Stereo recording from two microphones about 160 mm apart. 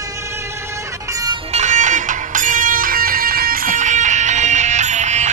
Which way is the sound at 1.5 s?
50° right (ahead or behind).